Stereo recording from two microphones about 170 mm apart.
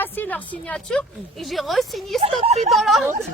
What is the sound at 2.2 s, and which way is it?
Speech, 40° right (ahead or behind).